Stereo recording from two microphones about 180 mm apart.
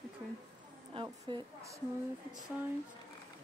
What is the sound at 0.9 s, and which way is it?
Speech, 25° right (ahead or behind).